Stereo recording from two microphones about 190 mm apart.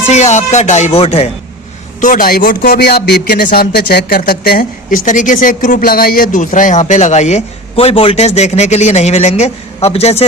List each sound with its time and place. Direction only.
0.1 s speech: 35° left (ahead or behind)
2.0 s a man's voice: 45° left (ahead or behind)